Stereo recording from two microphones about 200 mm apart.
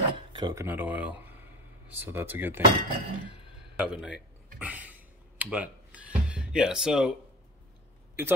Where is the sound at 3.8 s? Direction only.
Centre (ahead or behind).